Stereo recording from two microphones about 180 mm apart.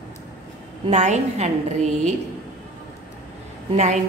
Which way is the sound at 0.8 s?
40° right (ahead or behind).